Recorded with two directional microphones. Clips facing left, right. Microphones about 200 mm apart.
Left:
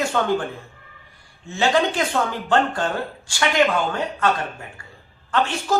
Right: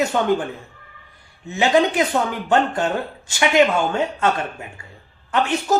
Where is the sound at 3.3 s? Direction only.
20° right (ahead or behind).